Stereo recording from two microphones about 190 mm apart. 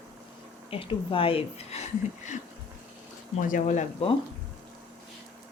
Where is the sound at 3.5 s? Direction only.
40° left (ahead or behind).